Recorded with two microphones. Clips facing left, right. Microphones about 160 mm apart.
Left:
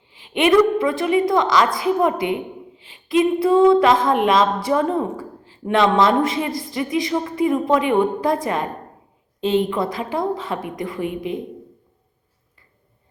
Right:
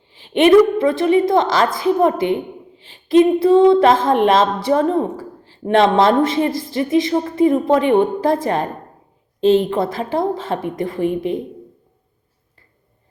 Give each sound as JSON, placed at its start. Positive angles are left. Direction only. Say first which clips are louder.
{"t": 0.2, "sound": "a sound", "louder": "right 5 dB", "side_deg": -30}
{"t": 0.8, "sound": "a woman's voice", "louder": "right 4 dB", "side_deg": -25}
{"t": 7.5, "sound": "speech", "louder": "right 1 dB", "side_deg": -35}